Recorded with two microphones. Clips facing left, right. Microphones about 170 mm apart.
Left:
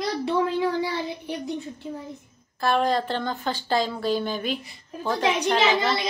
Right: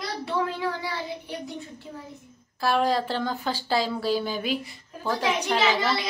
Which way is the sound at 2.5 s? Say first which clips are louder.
Left 1 dB; 5° right (ahead or behind).